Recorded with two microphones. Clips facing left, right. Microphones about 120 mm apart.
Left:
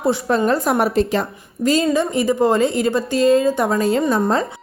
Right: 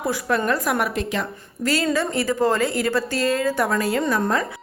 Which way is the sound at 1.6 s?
20° left (ahead or behind).